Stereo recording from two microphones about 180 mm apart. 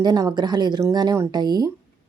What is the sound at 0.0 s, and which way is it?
A woman's voice, 20° right (ahead or behind).